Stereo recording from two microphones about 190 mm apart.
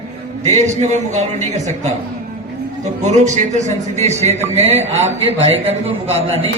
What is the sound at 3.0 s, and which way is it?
Speech, 35° right (ahead or behind).